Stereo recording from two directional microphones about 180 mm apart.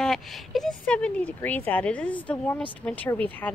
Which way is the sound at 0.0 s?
Centre (ahead or behind).